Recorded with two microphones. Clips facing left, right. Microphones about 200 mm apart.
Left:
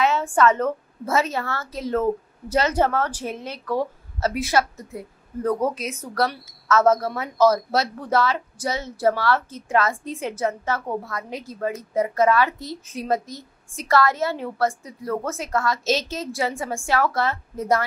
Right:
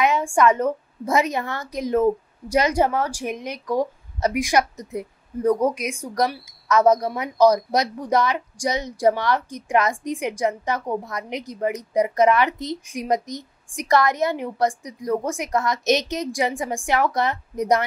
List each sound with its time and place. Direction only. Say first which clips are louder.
0.0 s a woman's voice: right 1 dB; 15° right (ahead or behind)